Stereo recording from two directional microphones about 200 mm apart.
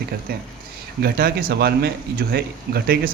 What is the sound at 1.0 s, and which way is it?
Speech, 50° right (ahead or behind).